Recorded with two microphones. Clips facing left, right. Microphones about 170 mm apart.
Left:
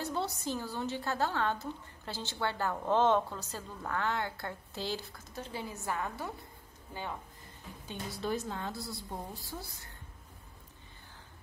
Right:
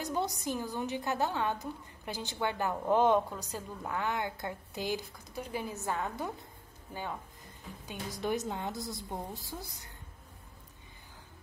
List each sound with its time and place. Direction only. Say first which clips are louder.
0.0 s a woman's voice: right 1 dB; 15° right (ahead or behind)
8.2 s a woman's voice: right 2 dB; 20° right (ahead or behind)